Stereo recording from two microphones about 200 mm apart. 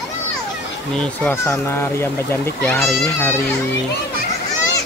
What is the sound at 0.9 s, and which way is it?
Speech, 5° left (ahead or behind).